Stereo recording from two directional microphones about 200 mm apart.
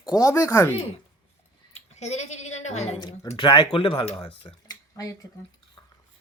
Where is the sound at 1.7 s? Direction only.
35° left (ahead or behind); by 5.1 s 20° left (ahead or behind).